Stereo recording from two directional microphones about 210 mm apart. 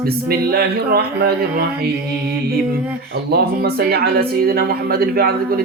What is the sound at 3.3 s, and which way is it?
Speech, 50° right (ahead or behind).